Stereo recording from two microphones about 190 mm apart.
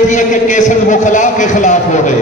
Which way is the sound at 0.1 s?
40° left (ahead or behind).